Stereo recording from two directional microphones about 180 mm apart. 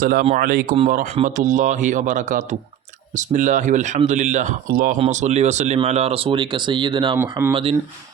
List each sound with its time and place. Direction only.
0.0 s speech: 50° right (ahead or behind)
4.9 s speech: 40° right (ahead or behind)
7.2 s speech: 15° right (ahead or behind)
7.5 s speech: 30° right (ahead or behind)